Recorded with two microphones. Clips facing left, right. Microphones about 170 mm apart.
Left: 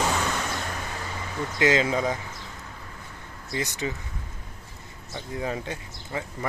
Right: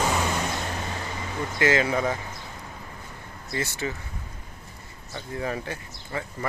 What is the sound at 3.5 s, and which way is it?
Speech, 15° left (ahead or behind).